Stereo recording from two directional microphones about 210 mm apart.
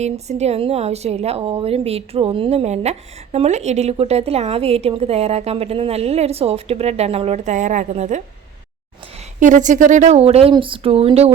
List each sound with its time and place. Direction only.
0.0 s a woman's voice: 30° right (ahead or behind)
9.4 s a woman's voice: 35° right (ahead or behind)